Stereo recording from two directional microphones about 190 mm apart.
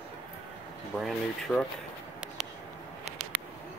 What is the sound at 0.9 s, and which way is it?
Speech, centre (ahead or behind).